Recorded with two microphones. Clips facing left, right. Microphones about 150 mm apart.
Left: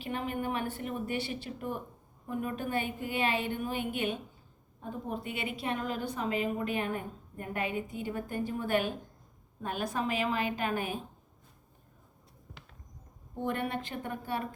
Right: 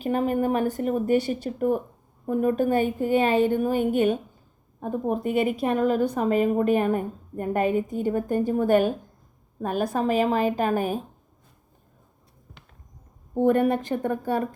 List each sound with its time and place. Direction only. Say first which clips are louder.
0.0 s a woman's voice: right 11 dB; 40° right (ahead or behind)
13.3 s a woman's voice: right 13 dB; 45° right (ahead or behind)